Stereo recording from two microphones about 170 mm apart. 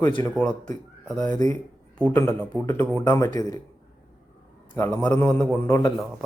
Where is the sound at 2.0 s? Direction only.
10° left (ahead or behind).